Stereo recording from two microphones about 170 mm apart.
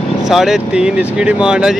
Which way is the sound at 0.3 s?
Centre (ahead or behind).